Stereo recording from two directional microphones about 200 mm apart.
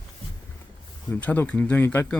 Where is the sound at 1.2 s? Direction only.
10° left (ahead or behind).